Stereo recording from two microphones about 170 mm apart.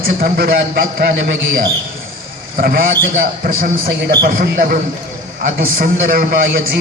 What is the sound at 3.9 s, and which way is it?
A man's voice, 80° right.